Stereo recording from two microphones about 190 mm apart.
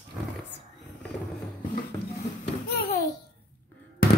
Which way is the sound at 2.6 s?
55° left (ahead or behind).